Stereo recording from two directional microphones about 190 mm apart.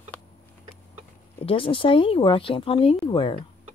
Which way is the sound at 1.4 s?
25° left (ahead or behind).